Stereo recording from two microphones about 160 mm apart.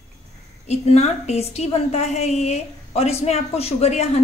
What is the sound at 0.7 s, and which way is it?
A woman's voice, 40° left (ahead or behind).